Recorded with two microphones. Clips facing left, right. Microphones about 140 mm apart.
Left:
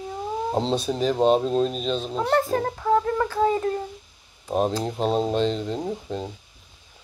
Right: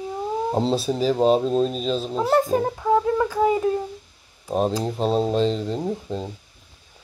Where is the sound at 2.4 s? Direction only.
15° right (ahead or behind).